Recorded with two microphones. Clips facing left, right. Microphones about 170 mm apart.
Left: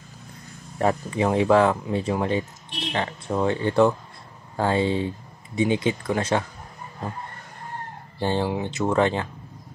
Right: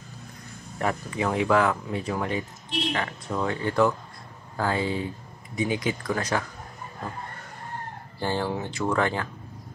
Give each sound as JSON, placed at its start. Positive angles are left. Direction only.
{"t": 0.7, "sound": "speech", "side_deg": 30}
{"t": 8.2, "sound": "speech", "side_deg": 20}